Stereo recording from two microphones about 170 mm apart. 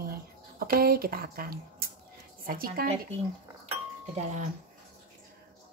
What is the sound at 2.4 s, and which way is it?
Speech, 60° right (ahead or behind).